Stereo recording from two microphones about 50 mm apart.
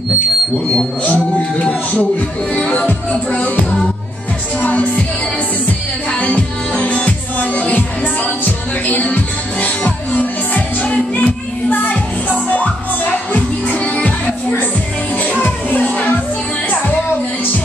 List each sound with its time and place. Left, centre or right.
1.0 s speech: left
2.9 s music: left
4.6 s music: left
6.1 s music: left